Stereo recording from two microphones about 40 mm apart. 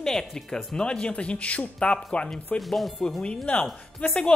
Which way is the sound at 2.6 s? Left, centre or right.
Centre.